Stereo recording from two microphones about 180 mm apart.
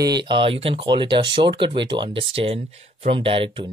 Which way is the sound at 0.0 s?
25° right (ahead or behind).